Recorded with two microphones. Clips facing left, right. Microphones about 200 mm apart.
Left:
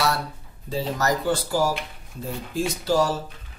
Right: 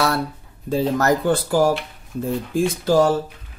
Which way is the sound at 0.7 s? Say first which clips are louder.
Right 6 dB; 55° right (ahead or behind).